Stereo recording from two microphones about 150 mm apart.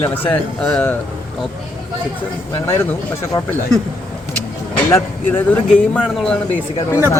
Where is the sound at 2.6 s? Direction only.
15° left (ahead or behind).